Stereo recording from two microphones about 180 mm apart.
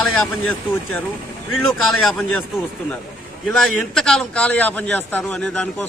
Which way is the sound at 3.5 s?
Centre (ahead or behind).